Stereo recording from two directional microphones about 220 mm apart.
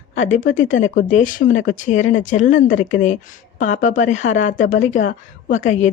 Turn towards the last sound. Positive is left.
turn(degrees=35)  # may be behind; listen again after turning